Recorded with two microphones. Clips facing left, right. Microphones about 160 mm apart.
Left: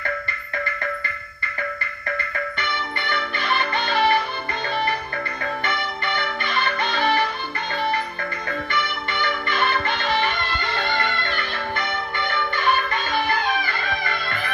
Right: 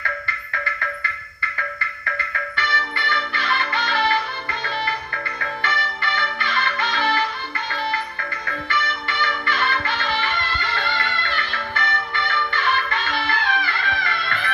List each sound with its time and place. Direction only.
2.5 s music: 15° left (ahead or behind)
5.6 s music: 15° left (ahead or behind)
8.6 s music: 15° left (ahead or behind)